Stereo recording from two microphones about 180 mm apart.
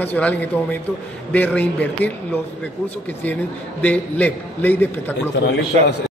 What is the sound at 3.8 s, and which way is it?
A man's voice, 10° left (ahead or behind).